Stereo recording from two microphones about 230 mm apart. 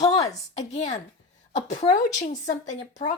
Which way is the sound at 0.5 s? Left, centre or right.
Left.